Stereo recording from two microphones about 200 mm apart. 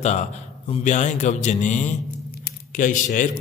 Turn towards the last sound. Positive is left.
turn(degrees=40)  # may be behind; listen again after turning